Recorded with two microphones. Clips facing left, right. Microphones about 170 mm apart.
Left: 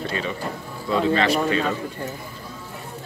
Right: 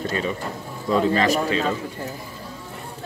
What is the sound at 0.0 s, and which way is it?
Music, 40° right (ahead or behind).